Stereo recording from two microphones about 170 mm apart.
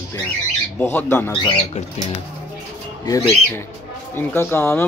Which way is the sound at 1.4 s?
30° left (ahead or behind).